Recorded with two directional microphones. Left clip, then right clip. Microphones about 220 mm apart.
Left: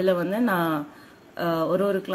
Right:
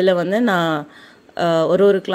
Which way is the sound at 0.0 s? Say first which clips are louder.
Right 7 dB; 35° right (ahead or behind).